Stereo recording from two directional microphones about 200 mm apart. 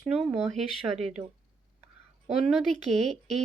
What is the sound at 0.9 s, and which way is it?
Speech, 35° right (ahead or behind).